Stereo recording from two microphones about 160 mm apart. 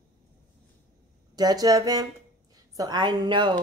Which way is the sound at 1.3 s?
25° right (ahead or behind).